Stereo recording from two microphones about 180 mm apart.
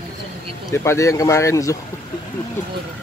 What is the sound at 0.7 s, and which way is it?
Speech, 15° left (ahead or behind).